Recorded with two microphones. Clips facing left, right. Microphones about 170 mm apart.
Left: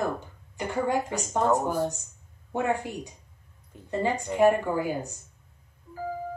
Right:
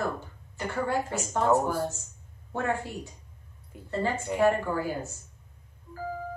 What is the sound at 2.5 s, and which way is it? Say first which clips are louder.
A woman's voice: left 3 dB; 15° left (ahead or behind).